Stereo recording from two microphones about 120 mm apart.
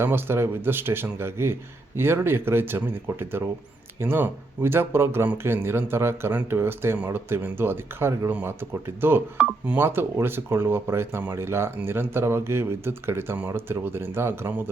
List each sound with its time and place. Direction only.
0.0 s speech: 20° right (ahead or behind)